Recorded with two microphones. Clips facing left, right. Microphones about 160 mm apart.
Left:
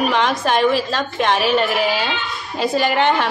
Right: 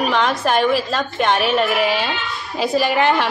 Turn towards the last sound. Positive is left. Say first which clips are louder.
# even
turn(degrees=0)  # may be behind; listen again after turning